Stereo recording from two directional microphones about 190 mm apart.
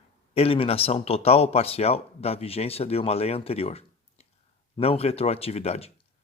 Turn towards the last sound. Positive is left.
turn(degrees=35)  # may be behind; listen again after turning